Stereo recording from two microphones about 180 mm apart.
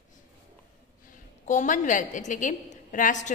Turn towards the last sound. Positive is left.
turn(degrees=45)  # may be behind; listen again after turning